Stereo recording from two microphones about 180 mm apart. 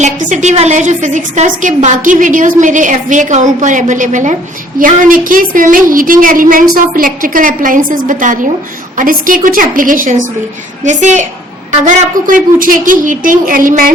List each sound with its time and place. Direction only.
0.0 s a woman's voice: 45° right (ahead or behind)